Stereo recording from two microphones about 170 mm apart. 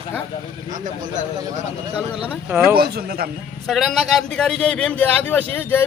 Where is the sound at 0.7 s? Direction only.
50° right (ahead or behind).